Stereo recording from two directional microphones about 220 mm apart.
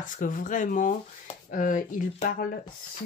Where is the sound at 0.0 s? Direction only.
35° left (ahead or behind).